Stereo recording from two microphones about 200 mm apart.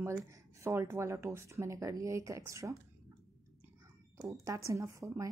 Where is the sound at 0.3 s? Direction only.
15° right (ahead or behind).